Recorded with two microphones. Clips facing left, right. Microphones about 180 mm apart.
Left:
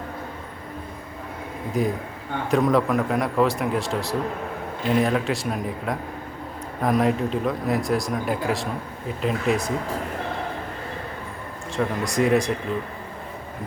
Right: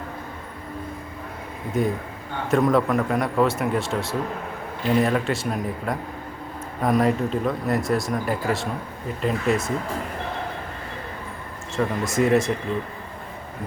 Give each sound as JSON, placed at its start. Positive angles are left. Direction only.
{"t": 1.7, "sound": "speech", "side_deg": 0}
{"t": 11.8, "sound": "speech", "side_deg": 0}